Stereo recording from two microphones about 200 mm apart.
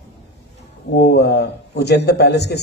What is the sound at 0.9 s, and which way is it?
Speech, 55° left (ahead or behind).